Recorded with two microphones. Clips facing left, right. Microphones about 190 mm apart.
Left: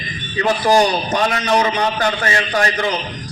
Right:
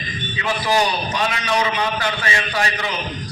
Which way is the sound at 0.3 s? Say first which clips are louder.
Left 6 dB; 45° left (ahead or behind).